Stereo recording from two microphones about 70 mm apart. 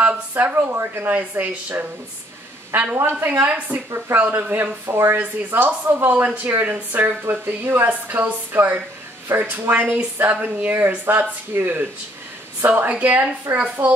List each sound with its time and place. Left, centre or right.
0.4 s speech: right
5.1 s speech: right